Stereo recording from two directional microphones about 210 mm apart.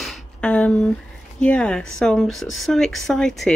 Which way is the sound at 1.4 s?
5° left (ahead or behind).